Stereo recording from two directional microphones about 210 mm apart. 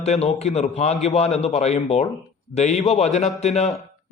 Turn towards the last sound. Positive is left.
turn(degrees=30)  # may be behind; listen again after turning